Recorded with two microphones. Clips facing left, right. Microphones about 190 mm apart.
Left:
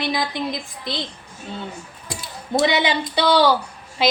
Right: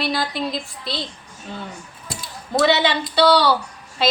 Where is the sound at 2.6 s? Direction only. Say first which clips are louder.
Right 2 dB; 15° left (ahead or behind).